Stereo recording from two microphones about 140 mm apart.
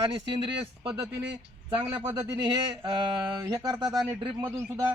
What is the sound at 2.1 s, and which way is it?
A man's voice, 30° right (ahead or behind).